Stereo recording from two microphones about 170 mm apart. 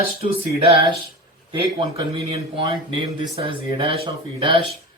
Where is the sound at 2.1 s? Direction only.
35° right (ahead or behind).